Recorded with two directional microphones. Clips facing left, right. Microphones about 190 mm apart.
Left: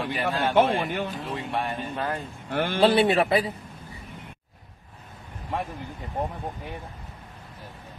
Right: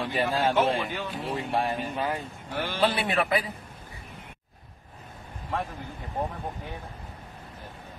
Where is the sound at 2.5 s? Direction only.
55° left (ahead or behind).